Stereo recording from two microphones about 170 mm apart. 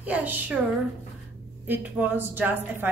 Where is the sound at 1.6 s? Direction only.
10° right (ahead or behind).